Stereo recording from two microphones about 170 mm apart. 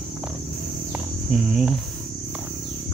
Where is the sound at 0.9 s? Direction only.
5° right (ahead or behind).